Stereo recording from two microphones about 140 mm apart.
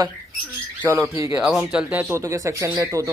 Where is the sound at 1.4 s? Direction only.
5° right (ahead or behind); by 3.1 s 25° right (ahead or behind).